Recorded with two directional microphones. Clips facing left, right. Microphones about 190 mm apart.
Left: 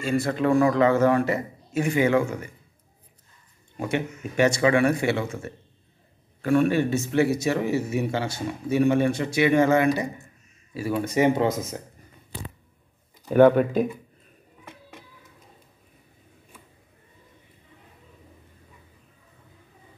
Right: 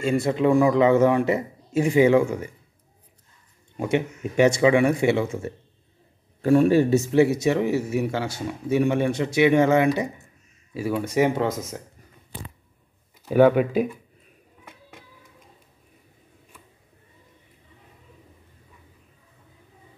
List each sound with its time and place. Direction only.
0.0 s a man's voice: 20° right (ahead or behind)
3.7 s a man's voice: 20° right (ahead or behind)
7.2 s a man's voice: 20° right (ahead or behind); by 11.8 s centre (ahead or behind)
13.2 s speech: 5° right (ahead or behind)